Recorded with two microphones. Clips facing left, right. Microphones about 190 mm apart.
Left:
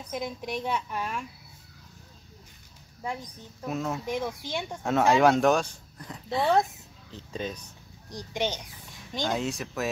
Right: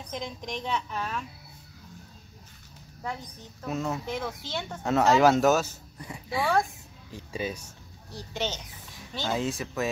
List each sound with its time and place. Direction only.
0.1 s a woman's voice: 10° left (ahead or behind)
3.6 s speech: centre (ahead or behind)
4.0 s a woman's voice: 10° left (ahead or behind)
4.8 s speech: centre (ahead or behind)
6.4 s a woman's voice: 20° left (ahead or behind)
7.1 s speech: 10° right (ahead or behind)
8.1 s a woman's voice: 15° left (ahead or behind)
9.3 s speech: centre (ahead or behind)